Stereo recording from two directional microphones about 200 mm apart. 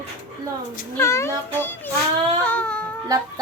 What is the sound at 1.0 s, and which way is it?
Speech, 15° left (ahead or behind).